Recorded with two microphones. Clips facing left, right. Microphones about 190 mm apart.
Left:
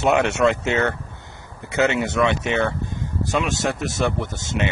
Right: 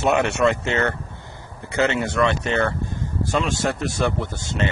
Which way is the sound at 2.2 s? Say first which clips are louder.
Right 1 dB; 15° left (ahead or behind).